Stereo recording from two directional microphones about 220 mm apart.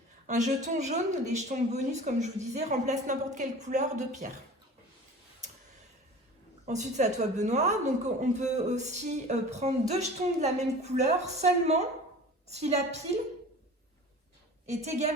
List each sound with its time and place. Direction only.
0.3 s speech: 35° right (ahead or behind)
5.4 s a sound: 35° right (ahead or behind)
6.7 s speech: 30° right (ahead or behind)
14.7 s speech: 30° right (ahead or behind)